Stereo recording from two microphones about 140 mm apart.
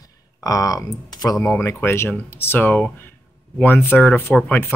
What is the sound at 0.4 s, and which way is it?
Speech, 25° left (ahead or behind).